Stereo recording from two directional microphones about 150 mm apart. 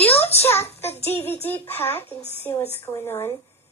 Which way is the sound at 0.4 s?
15° left (ahead or behind).